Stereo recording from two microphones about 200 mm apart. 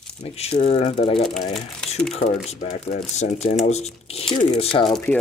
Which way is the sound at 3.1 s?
35° left (ahead or behind).